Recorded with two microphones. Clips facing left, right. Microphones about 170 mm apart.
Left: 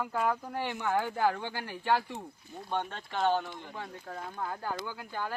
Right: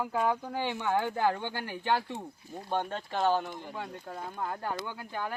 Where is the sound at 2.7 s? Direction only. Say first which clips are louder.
Right 2 dB; 10° right (ahead or behind).